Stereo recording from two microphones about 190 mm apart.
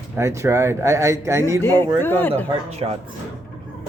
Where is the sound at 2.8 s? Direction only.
25° right (ahead or behind).